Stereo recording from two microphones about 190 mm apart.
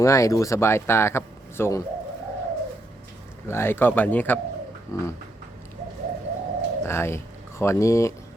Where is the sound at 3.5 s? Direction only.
10° left (ahead or behind).